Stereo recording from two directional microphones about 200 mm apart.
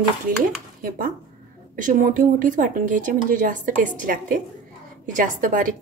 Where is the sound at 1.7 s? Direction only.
40° right (ahead or behind).